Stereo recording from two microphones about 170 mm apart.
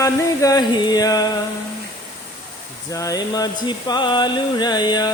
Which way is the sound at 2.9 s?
20° left (ahead or behind).